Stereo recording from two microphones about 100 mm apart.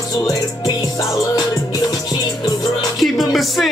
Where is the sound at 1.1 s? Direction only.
40° left (ahead or behind).